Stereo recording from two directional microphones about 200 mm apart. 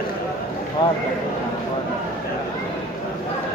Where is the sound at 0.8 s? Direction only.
20° left (ahead or behind).